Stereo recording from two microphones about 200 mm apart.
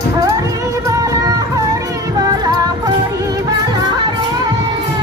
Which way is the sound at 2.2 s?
20° right (ahead or behind).